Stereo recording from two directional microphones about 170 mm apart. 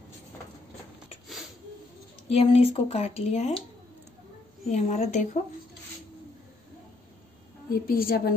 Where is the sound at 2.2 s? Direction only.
35° left (ahead or behind).